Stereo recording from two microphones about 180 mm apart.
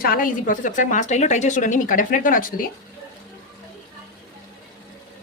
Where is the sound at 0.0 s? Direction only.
50° left (ahead or behind).